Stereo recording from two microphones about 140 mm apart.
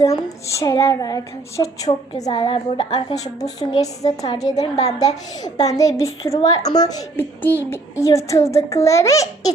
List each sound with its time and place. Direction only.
0.0 s speech: 25° left (ahead or behind)
2.3 s a woman's voice: 35° left (ahead or behind)
3.2 s speech: 25° left (ahead or behind)
7.2 s a child's voice: 15° left (ahead or behind)